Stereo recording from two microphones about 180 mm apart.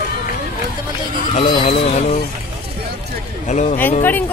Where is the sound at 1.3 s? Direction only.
40° left (ahead or behind).